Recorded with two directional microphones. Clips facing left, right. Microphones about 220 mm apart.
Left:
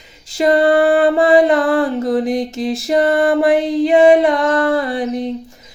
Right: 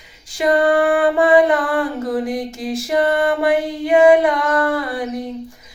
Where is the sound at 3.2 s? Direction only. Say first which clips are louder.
Left 4 dB; 35° left (ahead or behind).